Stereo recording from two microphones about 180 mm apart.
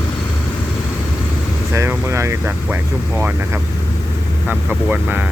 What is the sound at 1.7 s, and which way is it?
Speech, 15° right (ahead or behind).